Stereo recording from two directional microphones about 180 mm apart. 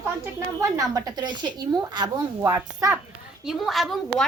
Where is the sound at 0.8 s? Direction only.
20° right (ahead or behind).